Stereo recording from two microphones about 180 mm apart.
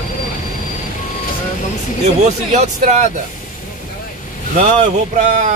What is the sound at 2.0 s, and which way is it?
Speech, 40° right (ahead or behind).